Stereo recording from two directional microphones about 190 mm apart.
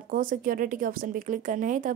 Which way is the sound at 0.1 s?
45° right (ahead or behind).